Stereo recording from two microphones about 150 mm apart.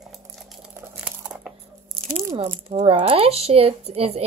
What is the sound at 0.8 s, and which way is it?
Crumpling, 5° right (ahead or behind).